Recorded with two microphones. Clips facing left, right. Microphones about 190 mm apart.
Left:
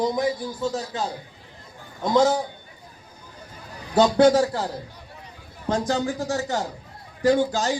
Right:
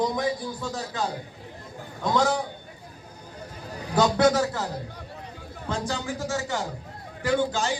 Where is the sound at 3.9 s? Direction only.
30° left (ahead or behind).